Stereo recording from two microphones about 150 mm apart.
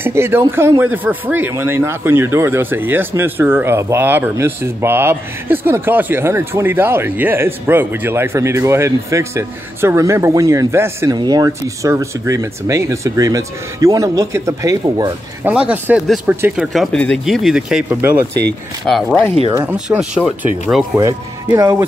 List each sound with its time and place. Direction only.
0.0 s speech: 15° right (ahead or behind)
11.1 s speech: 25° right (ahead or behind)
15.4 s speech: 10° right (ahead or behind)
16.7 s speech: 5° left (ahead or behind)
19.5 s speech: 15° right (ahead or behind)
20.9 s speech: 20° right (ahead or behind)